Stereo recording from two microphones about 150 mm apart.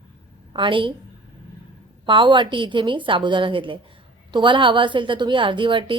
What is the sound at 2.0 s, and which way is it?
A woman's voice, 30° right (ahead or behind).